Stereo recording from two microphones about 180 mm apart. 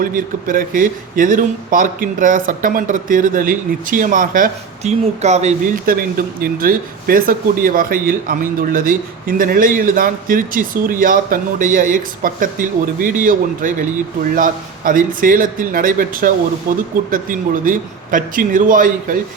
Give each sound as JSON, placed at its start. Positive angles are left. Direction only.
{"t": 0.0, "sound": "a man's voice", "side_deg": -50}